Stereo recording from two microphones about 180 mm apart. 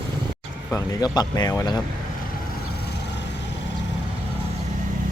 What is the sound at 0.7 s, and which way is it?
Speech, 20° left (ahead or behind).